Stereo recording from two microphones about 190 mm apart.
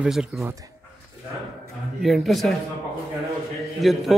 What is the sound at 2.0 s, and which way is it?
Speech, centre (ahead or behind).